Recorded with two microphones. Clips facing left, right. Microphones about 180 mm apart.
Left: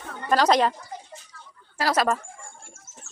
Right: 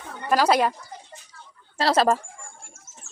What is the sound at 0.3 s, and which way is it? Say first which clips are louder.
Speech: even; 10° right (ahead or behind).